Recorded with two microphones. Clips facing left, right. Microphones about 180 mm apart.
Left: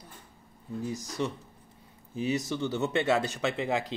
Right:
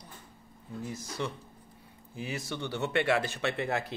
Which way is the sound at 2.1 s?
20° left (ahead or behind).